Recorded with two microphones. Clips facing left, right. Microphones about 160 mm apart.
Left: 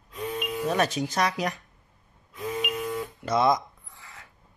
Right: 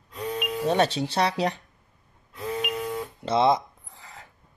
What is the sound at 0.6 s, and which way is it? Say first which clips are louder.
Speech: right 3 dB; 30° right (ahead or behind).